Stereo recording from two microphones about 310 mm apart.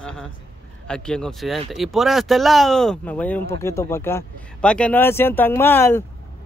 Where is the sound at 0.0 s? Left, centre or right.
Centre.